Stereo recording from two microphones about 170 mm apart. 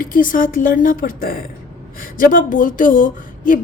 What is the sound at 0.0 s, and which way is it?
A woman's voice, 55° left (ahead or behind).